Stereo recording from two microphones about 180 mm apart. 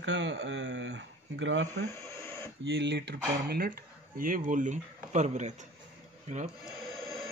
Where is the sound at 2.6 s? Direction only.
85° right; by 5.7 s 40° right (ahead or behind).